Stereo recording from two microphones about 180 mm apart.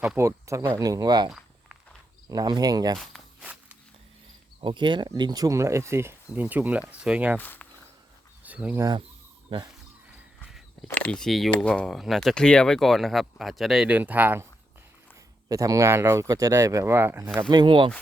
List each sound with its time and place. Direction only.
0.2 s speech: 15° right (ahead or behind)
2.3 s speech: 20° right (ahead or behind)
3.0 s a sound: centre (ahead or behind)
4.6 s speech: 25° right (ahead or behind); by 7.3 s 5° right (ahead or behind)
7.3 s speech: 10° left (ahead or behind)
8.4 s speech: 10° right (ahead or behind)
10.8 s speech: 5° left (ahead or behind); by 14.4 s 10° right (ahead or behind)
15.4 s speech: 20° right (ahead or behind)
17.5 s speech: 25° right (ahead or behind)